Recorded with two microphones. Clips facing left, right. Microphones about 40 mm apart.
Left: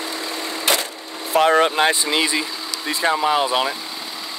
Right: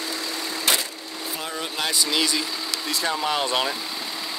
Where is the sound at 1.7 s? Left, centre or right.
Left.